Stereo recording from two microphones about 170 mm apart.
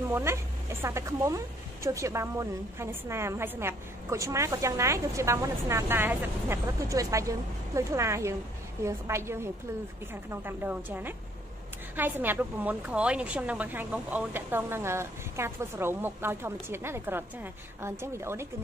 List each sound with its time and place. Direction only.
0.1 s speech: 15° right (ahead or behind)